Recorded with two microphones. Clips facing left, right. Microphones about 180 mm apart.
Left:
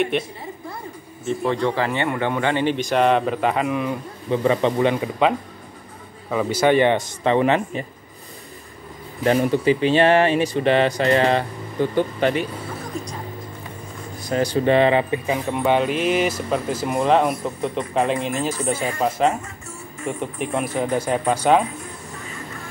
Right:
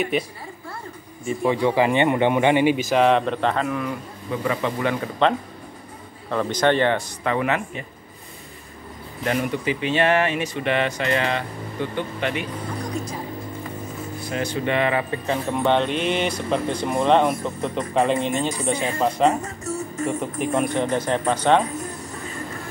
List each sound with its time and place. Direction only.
0.1 s speech: centre (ahead or behind)
1.5 s speech: 10° right (ahead or behind); by 4.9 s 30° left (ahead or behind)
5.2 s speech: 10° left (ahead or behind); by 7.8 s 30° left (ahead or behind)
9.2 s speech: 35° left (ahead or behind)
13.0 s music: centre (ahead or behind)
14.3 s speech: 35° left (ahead or behind)
15.2 s speech: 10° left (ahead or behind)
19.2 s music: 40° right (ahead or behind)
20.1 s speech: centre (ahead or behind)